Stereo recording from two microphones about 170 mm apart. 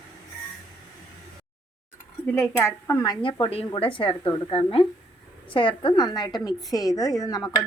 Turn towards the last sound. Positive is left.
turn(degrees=20)  # may be behind; listen again after turning